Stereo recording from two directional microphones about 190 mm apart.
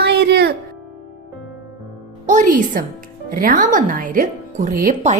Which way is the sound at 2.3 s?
45° right (ahead or behind).